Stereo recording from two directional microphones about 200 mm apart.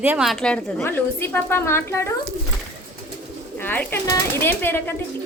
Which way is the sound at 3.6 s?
10° left (ahead or behind).